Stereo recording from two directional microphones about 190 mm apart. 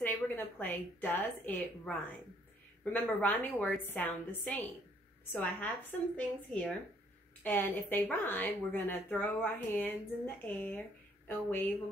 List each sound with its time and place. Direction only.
0.0 s a woman's voice: 10° left (ahead or behind)